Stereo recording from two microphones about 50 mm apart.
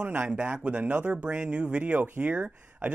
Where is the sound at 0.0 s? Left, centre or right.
Right.